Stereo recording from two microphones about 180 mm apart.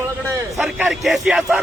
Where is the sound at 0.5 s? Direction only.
Centre (ahead or behind).